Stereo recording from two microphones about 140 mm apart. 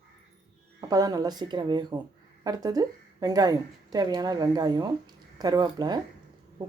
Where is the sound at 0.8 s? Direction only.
25° right (ahead or behind).